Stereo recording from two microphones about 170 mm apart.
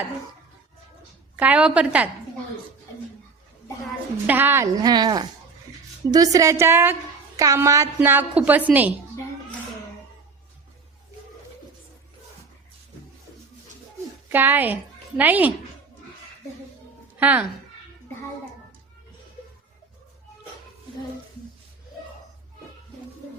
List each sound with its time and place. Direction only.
1.4 s a woman's voice: 5° right (ahead or behind)
4.3 s a woman's voice: 10° right (ahead or behind)
14.3 s a woman's voice: 10° right (ahead or behind)
17.2 s speech: 10° right (ahead or behind)